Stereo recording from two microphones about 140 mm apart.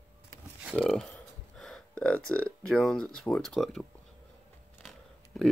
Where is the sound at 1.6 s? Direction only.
5° left (ahead or behind).